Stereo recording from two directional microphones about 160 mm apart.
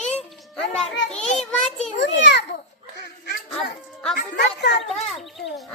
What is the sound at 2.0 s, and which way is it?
Speech, 90° left.